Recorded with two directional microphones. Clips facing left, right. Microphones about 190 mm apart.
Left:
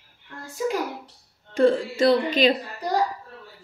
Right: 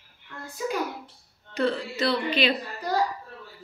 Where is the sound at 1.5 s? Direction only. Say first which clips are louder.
Left 7 dB; 45° left (ahead or behind).